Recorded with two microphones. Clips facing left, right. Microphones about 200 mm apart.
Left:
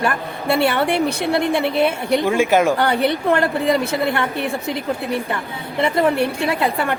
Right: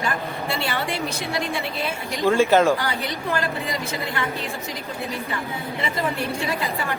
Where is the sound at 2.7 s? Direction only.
60° left (ahead or behind).